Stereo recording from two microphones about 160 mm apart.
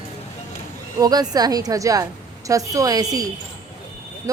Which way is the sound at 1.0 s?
25° right (ahead or behind).